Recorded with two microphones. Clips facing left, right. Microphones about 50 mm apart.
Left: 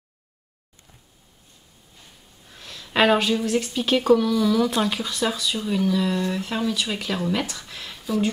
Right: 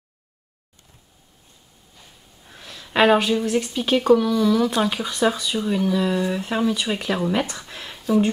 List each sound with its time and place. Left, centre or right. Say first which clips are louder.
2.5 s speech: right 1 dB; centre
5.1 s speech: right 4 dB; centre
7.4 s a sound: right 1 dB; centre